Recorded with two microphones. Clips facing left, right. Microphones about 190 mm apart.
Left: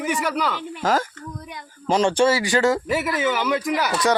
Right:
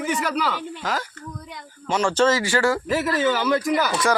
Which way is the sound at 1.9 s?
35° left (ahead or behind).